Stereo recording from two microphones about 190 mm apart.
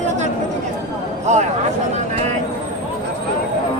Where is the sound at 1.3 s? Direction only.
35° right (ahead or behind).